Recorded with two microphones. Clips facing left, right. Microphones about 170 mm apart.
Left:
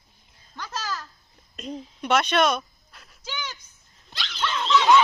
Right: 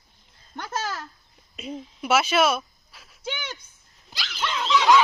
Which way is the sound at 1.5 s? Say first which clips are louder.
Even; 5° right (ahead or behind).